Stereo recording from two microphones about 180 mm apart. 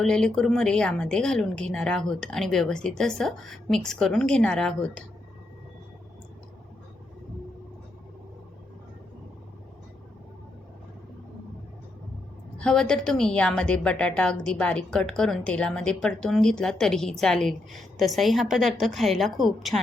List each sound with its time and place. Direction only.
0.0 s a woman's voice: centre (ahead or behind)
12.5 s a woman's voice: 5° left (ahead or behind)